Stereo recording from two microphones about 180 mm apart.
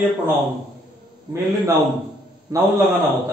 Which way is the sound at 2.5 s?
20° right (ahead or behind).